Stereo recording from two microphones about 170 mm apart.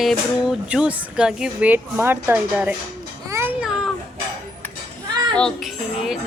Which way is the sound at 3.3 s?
15° right (ahead or behind).